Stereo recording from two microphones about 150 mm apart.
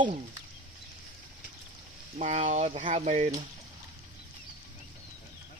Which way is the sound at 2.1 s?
50° right (ahead or behind).